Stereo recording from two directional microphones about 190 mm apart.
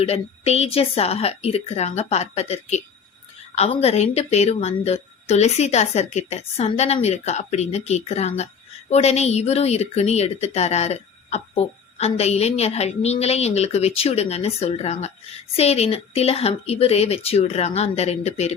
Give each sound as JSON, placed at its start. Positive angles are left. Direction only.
{"t": 0.0, "sound": "a woman's voice", "side_deg": 35}